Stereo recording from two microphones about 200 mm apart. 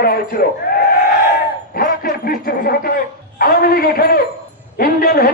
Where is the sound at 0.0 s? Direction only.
50° left (ahead or behind).